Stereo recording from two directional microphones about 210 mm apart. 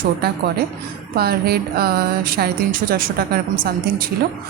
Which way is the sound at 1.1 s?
45° right (ahead or behind).